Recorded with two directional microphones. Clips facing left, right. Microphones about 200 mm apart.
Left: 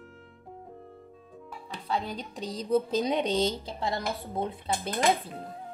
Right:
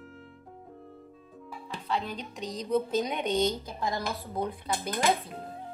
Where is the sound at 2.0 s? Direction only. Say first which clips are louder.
Left 1 dB; 35° left (ahead or behind).